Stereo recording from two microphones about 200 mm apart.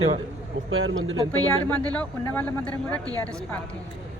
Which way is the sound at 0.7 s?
75° right (ahead or behind).